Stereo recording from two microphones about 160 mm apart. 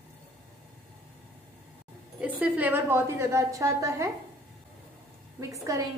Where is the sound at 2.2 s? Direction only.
10° right (ahead or behind).